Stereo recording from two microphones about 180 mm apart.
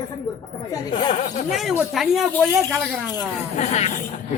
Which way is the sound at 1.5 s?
Centre (ahead or behind).